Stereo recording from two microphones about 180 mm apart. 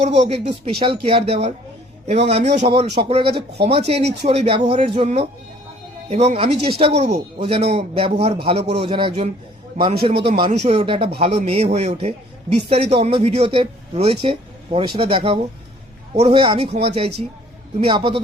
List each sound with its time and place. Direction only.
0.0 s a man's voice: 40° right (ahead or behind)